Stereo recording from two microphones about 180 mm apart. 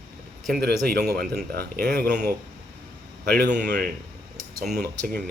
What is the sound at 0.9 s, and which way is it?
Speech, 60° right (ahead or behind).